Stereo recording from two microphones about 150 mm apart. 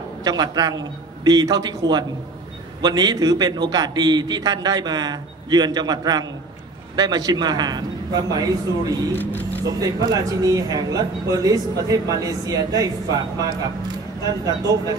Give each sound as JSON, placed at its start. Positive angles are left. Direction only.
{"t": 0.2, "sound": "a man's voice", "side_deg": -25}
{"t": 9.1, "sound": "speech", "side_deg": 15}
{"t": 9.7, "sound": "a man's voice", "side_deg": -25}
{"t": 14.2, "sound": "a man's voice", "side_deg": -25}